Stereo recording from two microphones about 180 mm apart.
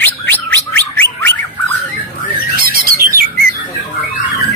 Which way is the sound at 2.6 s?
55° right (ahead or behind).